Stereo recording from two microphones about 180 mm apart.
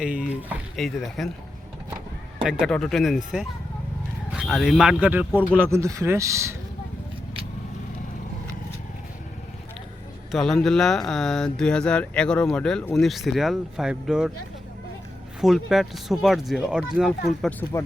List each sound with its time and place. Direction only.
0.0 s speech: 5° right (ahead or behind)
2.4 s speech: centre (ahead or behind)
4.4 s speech: centre (ahead or behind); by 6.6 s 15° right (ahead or behind)
10.3 s speech: centre (ahead or behind)
15.4 s speech: centre (ahead or behind)
17.4 s speech: 15° left (ahead or behind)